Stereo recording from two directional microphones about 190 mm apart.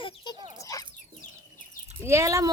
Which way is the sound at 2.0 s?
15° right (ahead or behind).